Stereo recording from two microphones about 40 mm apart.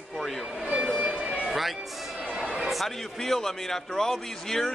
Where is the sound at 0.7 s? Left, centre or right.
Right.